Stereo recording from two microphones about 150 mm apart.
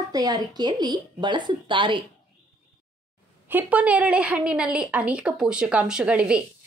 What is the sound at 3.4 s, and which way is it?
A woman's voice, 10° right (ahead or behind).